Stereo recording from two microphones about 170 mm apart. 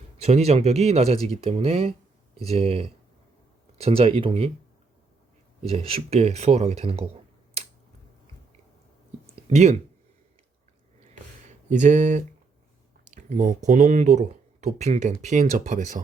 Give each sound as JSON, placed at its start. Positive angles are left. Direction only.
{"t": 0.2, "sound": "speech", "side_deg": -40}
{"t": 5.6, "sound": "speech", "side_deg": -35}
{"t": 9.2, "sound": "a sound", "side_deg": -40}
{"t": 11.7, "sound": "speech", "side_deg": -45}
{"t": 13.1, "sound": "a sound", "side_deg": -50}
{"t": 13.7, "sound": "speech", "side_deg": -45}